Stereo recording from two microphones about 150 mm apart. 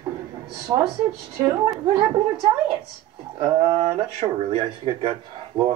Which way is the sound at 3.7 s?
40° right (ahead or behind).